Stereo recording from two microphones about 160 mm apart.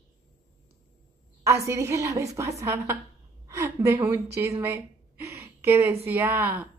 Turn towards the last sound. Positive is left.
turn(degrees=-10)  # may be behind; listen again after turning